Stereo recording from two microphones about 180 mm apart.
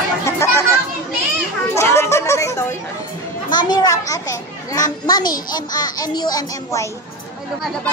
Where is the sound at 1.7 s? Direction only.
15° left (ahead or behind).